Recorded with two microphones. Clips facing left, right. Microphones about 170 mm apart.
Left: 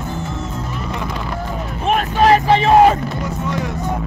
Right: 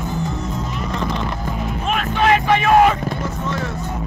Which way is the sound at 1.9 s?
40° left (ahead or behind).